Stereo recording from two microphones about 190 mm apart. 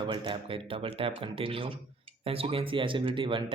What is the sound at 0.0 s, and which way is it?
Speech, 25° right (ahead or behind).